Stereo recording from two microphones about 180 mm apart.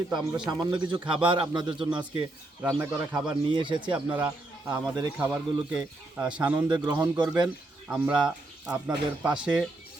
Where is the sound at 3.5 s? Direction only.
25° right (ahead or behind).